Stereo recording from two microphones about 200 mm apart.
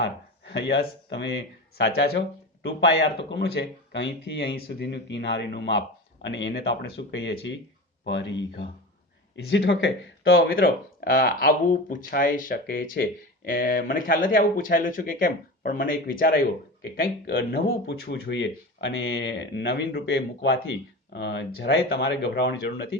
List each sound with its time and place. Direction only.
0.0 s speech: 60° left (ahead or behind)